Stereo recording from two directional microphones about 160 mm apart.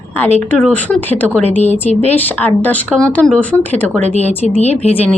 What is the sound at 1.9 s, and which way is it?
Speech, 45° left (ahead or behind).